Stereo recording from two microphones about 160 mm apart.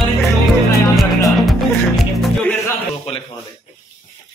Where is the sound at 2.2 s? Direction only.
10° left (ahead or behind).